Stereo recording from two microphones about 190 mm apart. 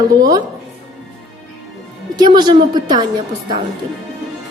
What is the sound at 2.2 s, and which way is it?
Speech, 20° right (ahead or behind).